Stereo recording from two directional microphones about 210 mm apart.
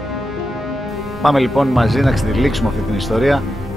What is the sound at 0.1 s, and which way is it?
A man's voice, centre (ahead or behind).